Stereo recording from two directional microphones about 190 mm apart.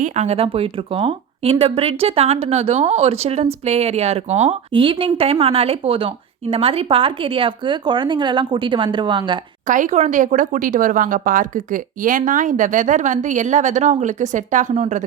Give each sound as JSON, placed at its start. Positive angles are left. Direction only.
{"t": 0.0, "sound": "speech", "side_deg": -35}
{"t": 9.6, "sound": "speech", "side_deg": -40}